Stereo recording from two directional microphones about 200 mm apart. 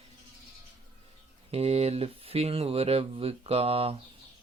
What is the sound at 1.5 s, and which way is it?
Speech, 30° right (ahead or behind).